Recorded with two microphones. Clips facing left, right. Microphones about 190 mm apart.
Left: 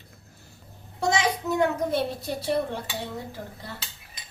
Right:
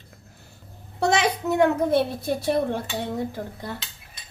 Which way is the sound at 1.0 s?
65° right (ahead or behind).